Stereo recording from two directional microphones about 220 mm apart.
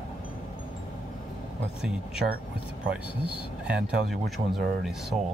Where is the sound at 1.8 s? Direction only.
5° right (ahead or behind).